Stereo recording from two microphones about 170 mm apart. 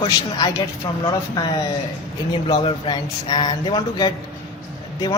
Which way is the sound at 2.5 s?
25° left (ahead or behind).